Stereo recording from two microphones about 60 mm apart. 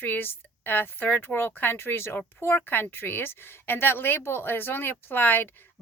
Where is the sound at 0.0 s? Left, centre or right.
Left.